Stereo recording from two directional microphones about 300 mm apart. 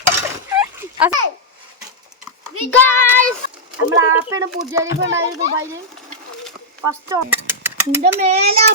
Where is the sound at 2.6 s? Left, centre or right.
Centre.